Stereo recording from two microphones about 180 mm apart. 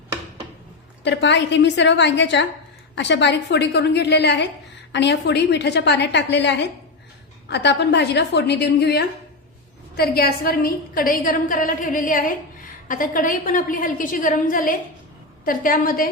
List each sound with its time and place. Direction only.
1.0 s a woman's voice: 75° left (ahead or behind); by 16.0 s 50° left (ahead or behind)